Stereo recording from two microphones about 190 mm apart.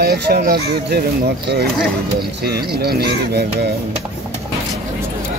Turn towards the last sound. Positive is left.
turn(degrees=-55)  # may be behind; listen again after turning